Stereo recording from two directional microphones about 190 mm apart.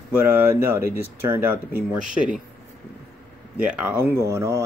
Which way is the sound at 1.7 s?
50° right (ahead or behind).